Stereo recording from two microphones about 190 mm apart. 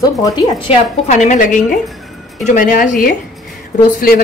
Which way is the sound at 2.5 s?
45° left (ahead or behind).